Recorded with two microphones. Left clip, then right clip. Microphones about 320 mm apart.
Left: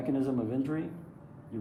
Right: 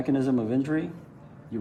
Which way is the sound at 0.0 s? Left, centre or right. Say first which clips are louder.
Right 5 dB; right.